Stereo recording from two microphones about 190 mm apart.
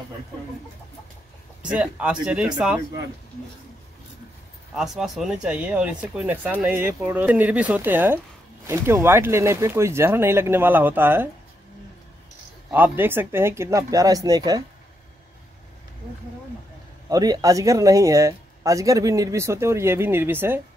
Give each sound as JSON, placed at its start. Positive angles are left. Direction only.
{"t": 1.7, "sound": "speech", "side_deg": -5}
{"t": 4.7, "sound": "speech", "side_deg": 0}
{"t": 12.7, "sound": "speech", "side_deg": -10}
{"t": 17.1, "sound": "speech", "side_deg": -20}